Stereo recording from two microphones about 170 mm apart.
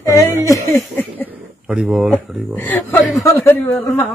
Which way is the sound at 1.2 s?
5° right (ahead or behind).